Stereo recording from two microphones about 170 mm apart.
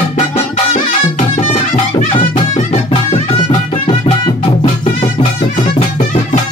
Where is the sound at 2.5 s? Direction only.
40° left (ahead or behind).